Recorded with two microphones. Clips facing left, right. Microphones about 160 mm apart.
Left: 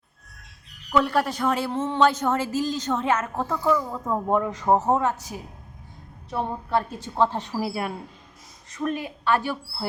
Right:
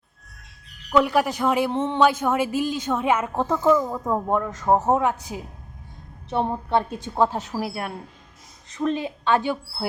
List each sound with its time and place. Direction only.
0.9 s speech: 15° right (ahead or behind)
4.3 s speech: 5° left (ahead or behind)
4.9 s speech: 15° right (ahead or behind)
7.2 s speech: 5° right (ahead or behind)
8.8 s speech: 25° right (ahead or behind)